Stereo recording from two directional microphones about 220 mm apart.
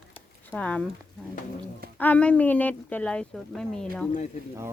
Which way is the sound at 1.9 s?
5° left (ahead or behind).